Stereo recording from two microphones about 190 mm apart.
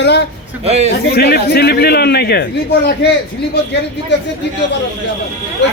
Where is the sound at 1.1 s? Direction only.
55° left (ahead or behind).